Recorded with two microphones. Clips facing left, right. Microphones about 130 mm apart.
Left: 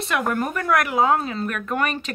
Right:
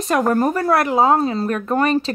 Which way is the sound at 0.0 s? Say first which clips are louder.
Right 7 dB; 40° right (ahead or behind).